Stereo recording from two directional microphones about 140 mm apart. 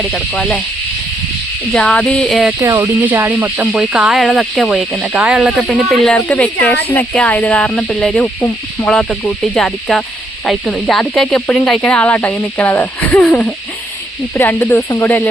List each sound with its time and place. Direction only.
0.1 s speech: 5° left (ahead or behind)
1.7 s speech: 5° left (ahead or behind)
2.6 s speech: 25° right (ahead or behind); by 13.5 s 5° left (ahead or behind)
14.3 s speech: 20° left (ahead or behind)